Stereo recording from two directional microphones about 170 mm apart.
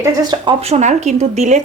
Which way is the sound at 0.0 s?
25° right (ahead or behind).